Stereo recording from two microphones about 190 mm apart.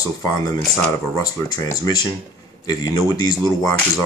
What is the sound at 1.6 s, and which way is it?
Speech, 20° left (ahead or behind).